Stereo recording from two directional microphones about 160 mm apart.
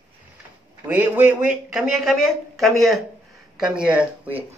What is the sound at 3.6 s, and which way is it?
Speech, 5° right (ahead or behind).